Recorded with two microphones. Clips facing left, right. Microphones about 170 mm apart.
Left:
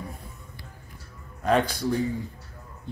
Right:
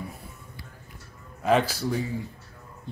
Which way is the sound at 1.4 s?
5° right (ahead or behind).